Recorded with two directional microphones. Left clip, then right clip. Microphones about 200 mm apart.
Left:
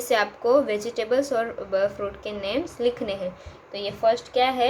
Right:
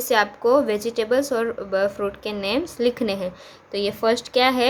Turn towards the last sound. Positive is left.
turn(degrees=-20)  # may be behind; listen again after turning